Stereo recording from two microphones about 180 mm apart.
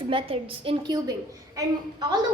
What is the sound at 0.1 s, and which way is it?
A woman's voice, 30° right (ahead or behind).